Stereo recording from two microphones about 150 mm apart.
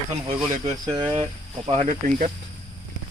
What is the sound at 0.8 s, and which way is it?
Speech, 30° right (ahead or behind).